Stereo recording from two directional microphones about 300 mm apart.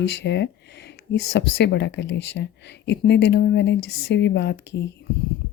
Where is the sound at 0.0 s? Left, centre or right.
Left.